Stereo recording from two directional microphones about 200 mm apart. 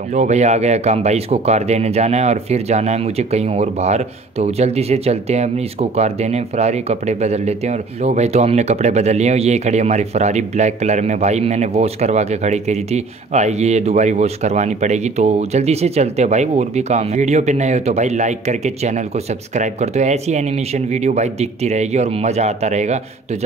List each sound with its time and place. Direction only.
0.1 s speech: 35° right (ahead or behind)